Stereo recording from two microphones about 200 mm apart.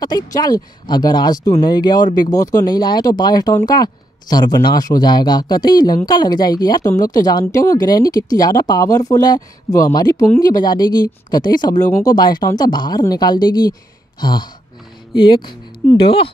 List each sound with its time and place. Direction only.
0.0 s a woman's voice: 20° left (ahead or behind)